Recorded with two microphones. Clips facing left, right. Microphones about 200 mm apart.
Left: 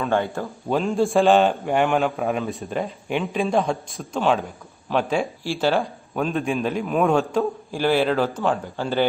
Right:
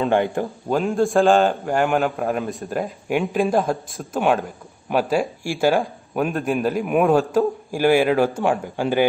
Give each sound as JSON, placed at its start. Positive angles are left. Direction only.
{"t": 0.0, "sound": "speech", "side_deg": -15}
{"t": 0.7, "sound": "a man's voice", "side_deg": 0}
{"t": 6.9, "sound": "speech", "side_deg": -15}